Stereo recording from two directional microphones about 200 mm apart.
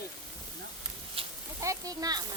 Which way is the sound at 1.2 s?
30° right (ahead or behind).